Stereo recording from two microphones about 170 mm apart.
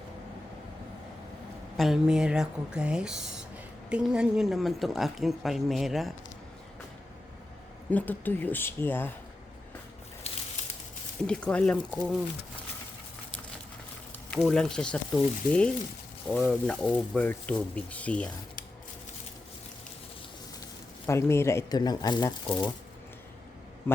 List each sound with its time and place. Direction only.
1.7 s a woman's voice: centre (ahead or behind)
7.9 s speech: 10° left (ahead or behind)
10.3 s a sound: 35° left (ahead or behind)
11.2 s a woman's voice: 5° left (ahead or behind)
11.9 s a woman's voice: 5° right (ahead or behind)
14.3 s a woman's voice: centre (ahead or behind)
21.1 s speech: 15° left (ahead or behind)